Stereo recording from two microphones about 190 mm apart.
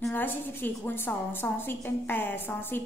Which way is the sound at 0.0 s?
10° left (ahead or behind).